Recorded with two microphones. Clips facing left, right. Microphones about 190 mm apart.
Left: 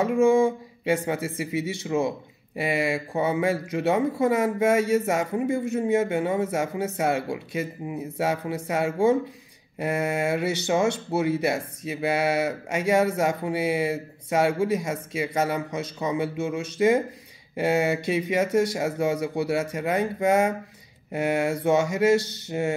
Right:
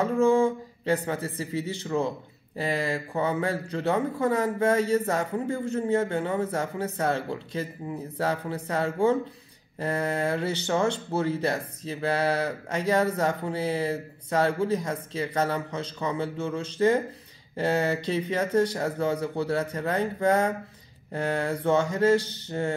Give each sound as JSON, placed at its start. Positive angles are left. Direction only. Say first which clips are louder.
{"t": 0.0, "sound": "speech", "louder": "left 2 dB", "side_deg": 15}